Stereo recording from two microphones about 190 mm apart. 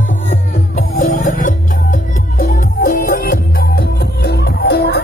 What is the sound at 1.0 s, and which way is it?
Music, 40° left (ahead or behind).